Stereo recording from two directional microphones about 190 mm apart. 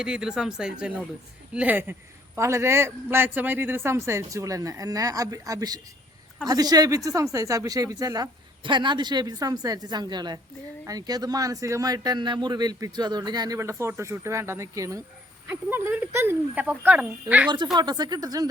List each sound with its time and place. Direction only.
0.0 s a man's voice: 5° right (ahead or behind)
17.7 s a man's voice: 20° right (ahead or behind)